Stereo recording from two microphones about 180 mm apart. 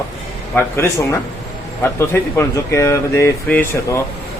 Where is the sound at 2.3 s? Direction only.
15° left (ahead or behind).